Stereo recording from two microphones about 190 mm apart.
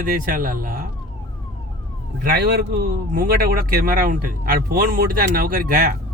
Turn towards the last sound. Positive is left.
turn(degrees=-45)  # may be behind; listen again after turning